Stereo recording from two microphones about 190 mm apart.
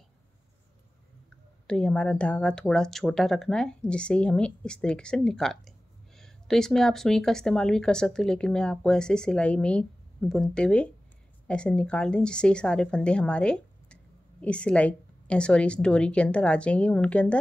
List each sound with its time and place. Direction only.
1.7 s speech: 5° left (ahead or behind)